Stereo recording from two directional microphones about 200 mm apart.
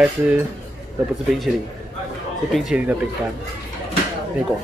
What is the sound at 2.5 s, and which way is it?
Speech, 5° right (ahead or behind).